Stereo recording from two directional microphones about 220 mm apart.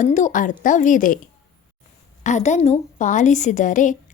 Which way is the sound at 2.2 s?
35° left (ahead or behind).